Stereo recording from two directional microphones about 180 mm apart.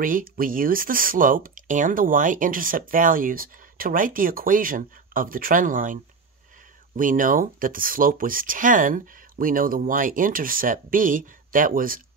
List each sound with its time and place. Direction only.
0.0 s speech: 50° right (ahead or behind)
7.0 s speech: 50° right (ahead or behind)